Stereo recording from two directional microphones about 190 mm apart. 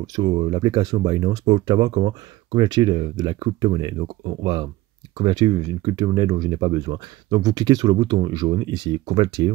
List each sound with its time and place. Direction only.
0.0 s speech: 20° right (ahead or behind)